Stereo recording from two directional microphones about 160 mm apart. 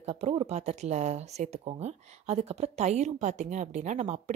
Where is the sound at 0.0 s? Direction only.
40° right (ahead or behind).